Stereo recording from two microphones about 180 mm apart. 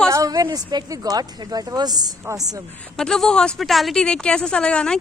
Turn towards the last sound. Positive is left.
turn(degrees=5)  # may be behind; listen again after turning